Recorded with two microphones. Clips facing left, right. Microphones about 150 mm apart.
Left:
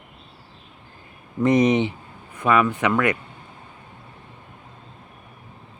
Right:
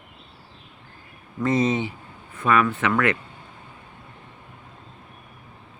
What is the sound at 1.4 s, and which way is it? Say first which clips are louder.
Speech: left 4 dB; 15° left (ahead or behind).